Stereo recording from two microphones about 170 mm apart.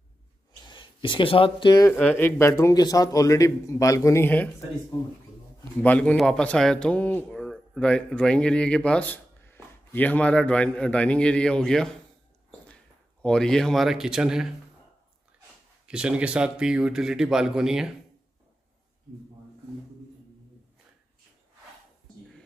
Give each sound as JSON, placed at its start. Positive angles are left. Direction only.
{"t": 0.7, "sound": "speech", "side_deg": 30}
{"t": 1.9, "sound": "speech", "side_deg": 10}
{"t": 5.8, "sound": "speech", "side_deg": 5}
{"t": 13.2, "sound": "speech", "side_deg": 5}
{"t": 15.9, "sound": "speech", "side_deg": -5}